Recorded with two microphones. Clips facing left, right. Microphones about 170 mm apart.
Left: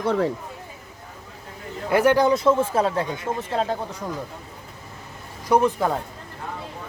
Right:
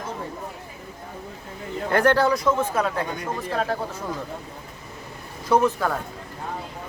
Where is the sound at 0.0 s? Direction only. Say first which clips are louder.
Left 11 dB; 75° left (ahead or behind).